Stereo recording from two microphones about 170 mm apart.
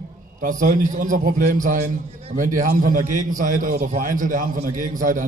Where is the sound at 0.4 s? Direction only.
50° right (ahead or behind).